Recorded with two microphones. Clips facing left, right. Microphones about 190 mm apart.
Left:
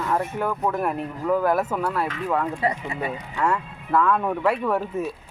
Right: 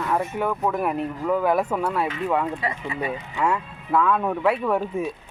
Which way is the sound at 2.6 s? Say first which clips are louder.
Left 3 dB; 35° left (ahead or behind).